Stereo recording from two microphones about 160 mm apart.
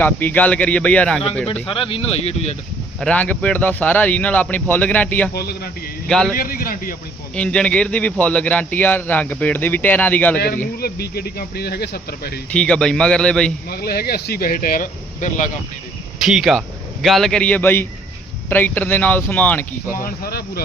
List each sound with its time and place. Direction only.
0.0 s speech: 10° left (ahead or behind)
1.6 s speech: 35° left (ahead or behind)
3.0 s speech: 10° left (ahead or behind)
5.3 s a man's voice: 80° left
6.1 s a man's voice: 5° left (ahead or behind)
6.3 s a man's voice: 65° left (ahead or behind)
7.3 s speech: 5° left (ahead or behind)
10.8 s speech: 75° left (ahead or behind)
12.5 s a man's voice: 5° left (ahead or behind)
13.7 s speech: 75° left (ahead or behind); by 15.4 s 55° left (ahead or behind)
16.1 s a man's voice: centre (ahead or behind)
19.9 s a man's voice: 60° left (ahead or behind)